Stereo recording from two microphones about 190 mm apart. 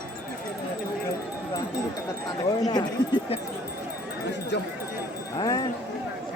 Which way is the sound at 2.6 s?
25° left (ahead or behind).